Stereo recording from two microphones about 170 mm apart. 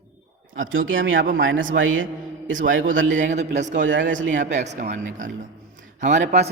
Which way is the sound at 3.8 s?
90° right.